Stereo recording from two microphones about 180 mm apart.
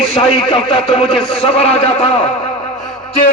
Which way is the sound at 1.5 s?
35° left (ahead or behind).